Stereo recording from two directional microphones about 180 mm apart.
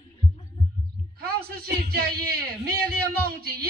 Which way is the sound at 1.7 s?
60° right (ahead or behind).